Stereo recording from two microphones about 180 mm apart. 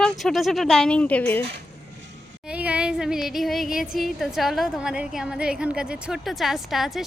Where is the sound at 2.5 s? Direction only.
5° right (ahead or behind).